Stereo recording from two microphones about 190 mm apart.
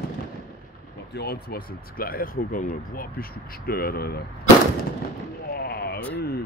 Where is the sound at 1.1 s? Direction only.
60° left (ahead or behind).